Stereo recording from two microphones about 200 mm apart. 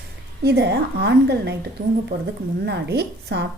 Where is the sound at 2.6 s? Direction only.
55° right (ahead or behind).